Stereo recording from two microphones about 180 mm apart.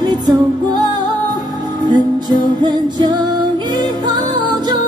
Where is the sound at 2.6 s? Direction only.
25° right (ahead or behind).